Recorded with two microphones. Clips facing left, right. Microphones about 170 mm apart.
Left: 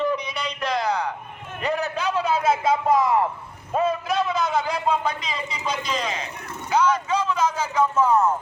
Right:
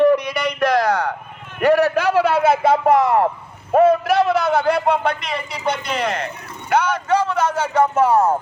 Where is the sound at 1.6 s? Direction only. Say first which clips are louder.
Right 10 dB; 75° right (ahead or behind).